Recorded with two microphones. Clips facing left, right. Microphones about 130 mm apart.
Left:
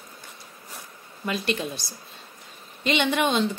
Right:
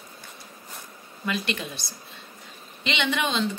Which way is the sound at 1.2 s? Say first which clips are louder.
Left 2 dB; 35° left (ahead or behind).